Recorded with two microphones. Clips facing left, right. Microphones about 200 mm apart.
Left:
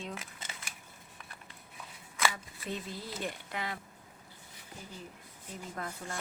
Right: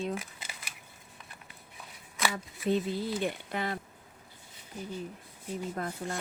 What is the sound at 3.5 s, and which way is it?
Speech, 35° right (ahead or behind).